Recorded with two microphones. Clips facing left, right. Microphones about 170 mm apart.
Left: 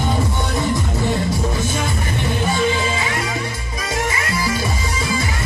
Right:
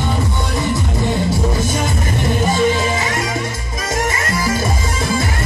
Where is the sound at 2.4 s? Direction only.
40° right (ahead or behind).